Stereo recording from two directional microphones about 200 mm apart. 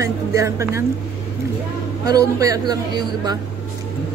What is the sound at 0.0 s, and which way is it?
Speech, 15° right (ahead or behind).